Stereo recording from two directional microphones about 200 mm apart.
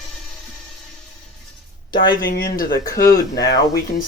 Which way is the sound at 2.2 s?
50° left (ahead or behind).